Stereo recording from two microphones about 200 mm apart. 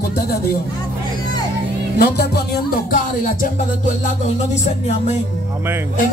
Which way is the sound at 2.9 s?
40° left (ahead or behind).